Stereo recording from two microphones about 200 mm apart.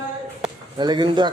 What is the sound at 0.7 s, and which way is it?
Speech, 20° right (ahead or behind).